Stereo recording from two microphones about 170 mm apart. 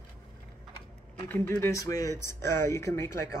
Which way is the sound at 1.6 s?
20° left (ahead or behind).